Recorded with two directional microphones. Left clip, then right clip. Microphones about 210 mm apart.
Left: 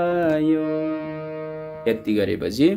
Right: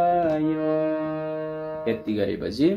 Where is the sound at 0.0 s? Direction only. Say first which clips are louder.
Left 1 dB; 55° left (ahead or behind).